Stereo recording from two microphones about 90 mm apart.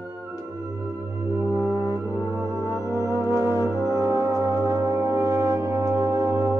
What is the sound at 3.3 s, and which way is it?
Music, 30° right (ahead or behind).